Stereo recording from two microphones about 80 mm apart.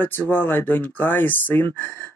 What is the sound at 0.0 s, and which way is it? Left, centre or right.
Speech, left.